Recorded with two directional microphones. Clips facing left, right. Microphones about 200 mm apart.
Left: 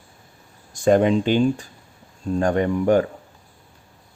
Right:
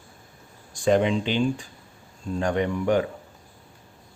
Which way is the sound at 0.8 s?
45° left (ahead or behind).